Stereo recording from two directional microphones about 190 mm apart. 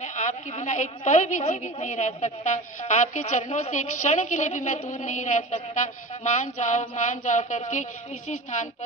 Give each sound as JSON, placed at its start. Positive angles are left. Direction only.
{"t": 0.0, "sound": "a woman's voice", "side_deg": 40}